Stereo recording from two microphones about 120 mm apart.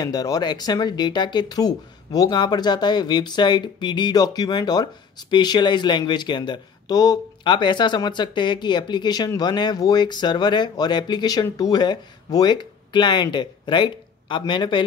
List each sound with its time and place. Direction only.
0.0 s speech: 30° left (ahead or behind)